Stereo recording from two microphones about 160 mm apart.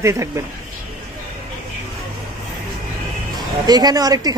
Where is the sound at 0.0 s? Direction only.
15° right (ahead or behind).